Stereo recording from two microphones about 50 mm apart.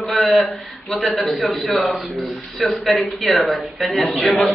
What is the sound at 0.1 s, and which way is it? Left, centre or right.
Speech, centre.